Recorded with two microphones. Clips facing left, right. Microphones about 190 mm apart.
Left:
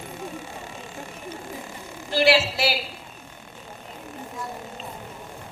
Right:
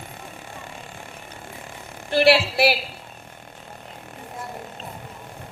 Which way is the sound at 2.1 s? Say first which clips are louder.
Right 3 dB; 60° right (ahead or behind).